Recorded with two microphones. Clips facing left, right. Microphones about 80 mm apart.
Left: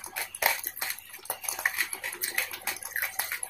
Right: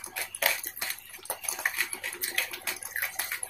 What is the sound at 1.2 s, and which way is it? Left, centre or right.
Bathtub, centre.